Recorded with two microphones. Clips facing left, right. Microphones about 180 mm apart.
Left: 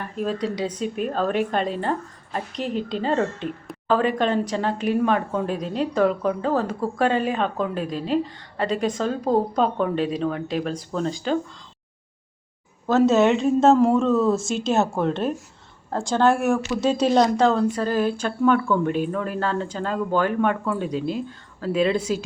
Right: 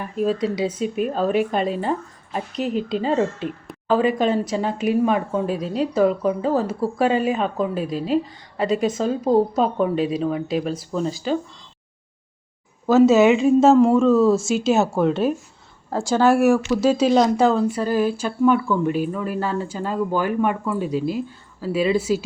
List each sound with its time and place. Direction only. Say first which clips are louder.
0.0 s speech: right 4 dB; 5° right (ahead or behind)
12.9 s speech: right 4 dB; 5° right (ahead or behind)